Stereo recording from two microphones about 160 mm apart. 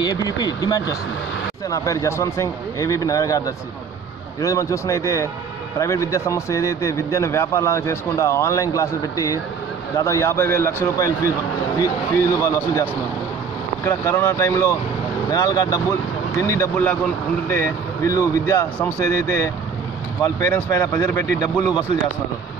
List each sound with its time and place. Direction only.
0.0 s speech: 25° left (ahead or behind)
13.8 s speech: 20° left (ahead or behind)